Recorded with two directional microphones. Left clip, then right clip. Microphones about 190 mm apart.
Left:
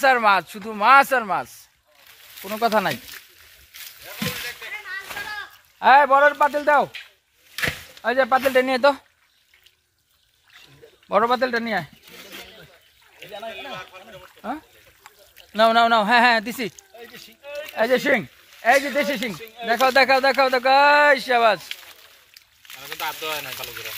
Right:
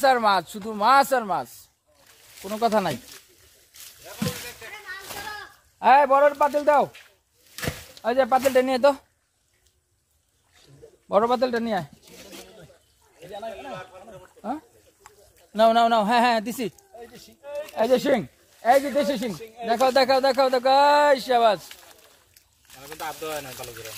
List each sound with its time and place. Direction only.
0.0 s speech: 10° left (ahead or behind)
2.6 s speech: 15° left (ahead or behind)
5.8 s speech: 15° left (ahead or behind)
7.6 s chop: 25° right (ahead or behind)
7.9 s speech: 15° left (ahead or behind)
11.1 s speech: 10° left (ahead or behind)
12.2 s a sound: centre (ahead or behind)
13.3 s speech: 5° left (ahead or behind)
15.0 s speech: 10° left (ahead or behind)
17.4 s a sound: centre (ahead or behind)
17.7 s speech: 10° left (ahead or behind)
19.2 s speech: centre (ahead or behind)
19.7 s speech: 10° left (ahead or behind)
22.8 s speech: 40° right (ahead or behind)